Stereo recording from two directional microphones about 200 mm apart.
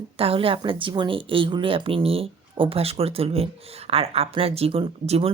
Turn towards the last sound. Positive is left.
turn(degrees=-30)  # may be behind; listen again after turning